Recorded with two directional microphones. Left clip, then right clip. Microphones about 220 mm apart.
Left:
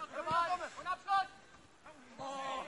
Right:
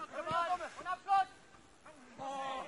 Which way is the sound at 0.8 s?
20° left (ahead or behind).